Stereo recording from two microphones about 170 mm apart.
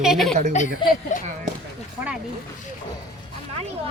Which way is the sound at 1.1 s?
45° left (ahead or behind).